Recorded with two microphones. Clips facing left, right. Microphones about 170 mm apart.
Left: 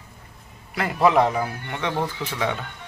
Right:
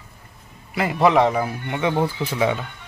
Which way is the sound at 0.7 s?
5° right (ahead or behind).